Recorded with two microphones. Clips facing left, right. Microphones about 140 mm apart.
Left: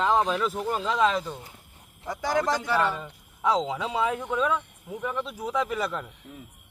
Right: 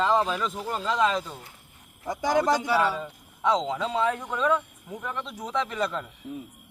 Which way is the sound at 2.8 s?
5° right (ahead or behind).